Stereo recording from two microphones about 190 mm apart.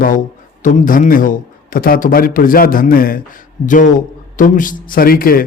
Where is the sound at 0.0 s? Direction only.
45° left (ahead or behind).